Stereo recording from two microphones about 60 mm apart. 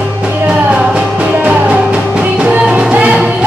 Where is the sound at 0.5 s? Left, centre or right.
Right.